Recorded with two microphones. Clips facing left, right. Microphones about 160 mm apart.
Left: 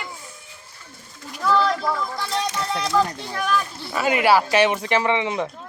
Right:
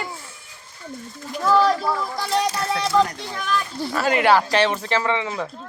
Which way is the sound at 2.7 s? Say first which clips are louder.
Right 1 dB; centre (ahead or behind).